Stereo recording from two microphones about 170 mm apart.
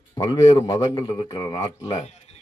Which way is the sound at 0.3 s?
25° left (ahead or behind).